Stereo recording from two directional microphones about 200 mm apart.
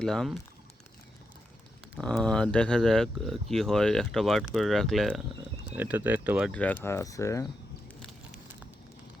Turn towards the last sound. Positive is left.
turn(degrees=15)  # may be behind; listen again after turning